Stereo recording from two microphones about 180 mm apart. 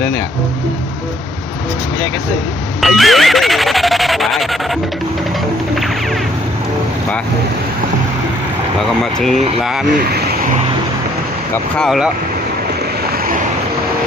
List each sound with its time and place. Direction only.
2.8 s speech: centre (ahead or behind)
9.6 s speech: centre (ahead or behind)
10.0 s vehicle: 60° right (ahead or behind)
11.5 s speech: centre (ahead or behind)